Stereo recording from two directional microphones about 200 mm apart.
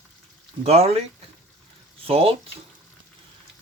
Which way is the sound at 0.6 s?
30° right (ahead or behind).